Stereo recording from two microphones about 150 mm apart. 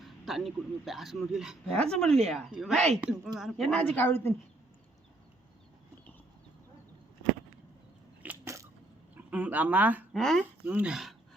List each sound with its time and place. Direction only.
0.0 s a woman's voice: centre (ahead or behind)
8.4 s a sound: 20° right (ahead or behind)
9.1 s speech: 10° right (ahead or behind)
10.1 s speech: centre (ahead or behind)
10.7 s speech: 10° right (ahead or behind)